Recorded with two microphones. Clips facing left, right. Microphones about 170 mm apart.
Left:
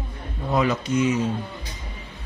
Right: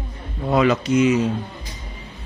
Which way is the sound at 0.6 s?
80° right.